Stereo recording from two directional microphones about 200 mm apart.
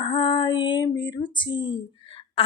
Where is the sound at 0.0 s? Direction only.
30° left (ahead or behind).